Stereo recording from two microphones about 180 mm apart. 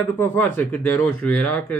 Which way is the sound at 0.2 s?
10° left (ahead or behind).